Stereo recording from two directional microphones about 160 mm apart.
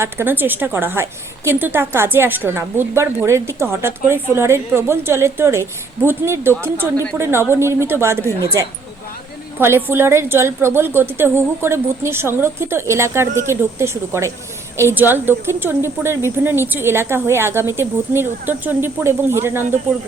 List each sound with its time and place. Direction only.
0.0 s a woman's voice: 15° right (ahead or behind)